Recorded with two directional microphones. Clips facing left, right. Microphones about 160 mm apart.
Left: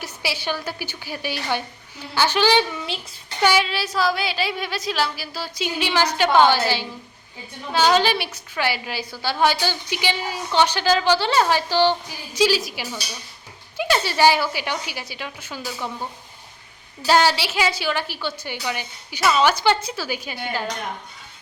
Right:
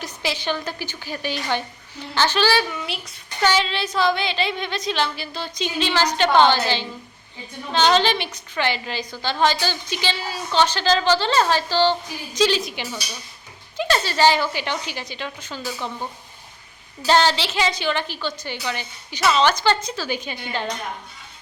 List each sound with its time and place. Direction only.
0.0 s a woman's voice: 10° left (ahead or behind)
17.1 s a woman's voice: 10° left (ahead or behind)